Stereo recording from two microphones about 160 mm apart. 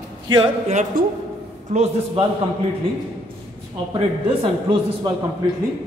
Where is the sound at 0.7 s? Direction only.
50° right (ahead or behind).